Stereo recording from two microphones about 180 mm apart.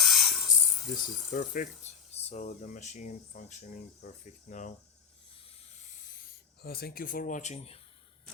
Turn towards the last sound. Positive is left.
turn(degrees=35)  # may be behind; listen again after turning